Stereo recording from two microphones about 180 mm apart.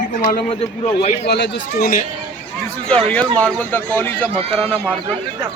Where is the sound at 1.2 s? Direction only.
70° left (ahead or behind).